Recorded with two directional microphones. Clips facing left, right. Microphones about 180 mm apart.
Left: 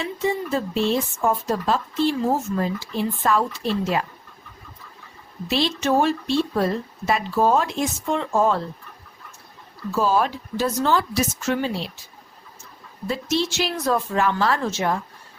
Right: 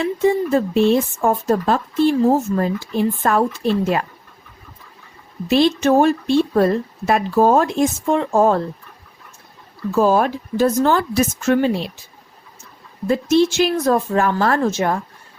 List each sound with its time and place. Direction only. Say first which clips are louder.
0.0 s speech: right 7 dB; 55° right (ahead or behind)
5.5 s speech: right 7 dB; 50° right (ahead or behind)
9.9 s speech: right 5 dB; 50° right (ahead or behind)
13.1 s speech: right 9 dB; 55° right (ahead or behind)